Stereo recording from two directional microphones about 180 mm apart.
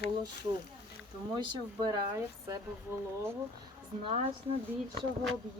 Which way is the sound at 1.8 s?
20° right (ahead or behind).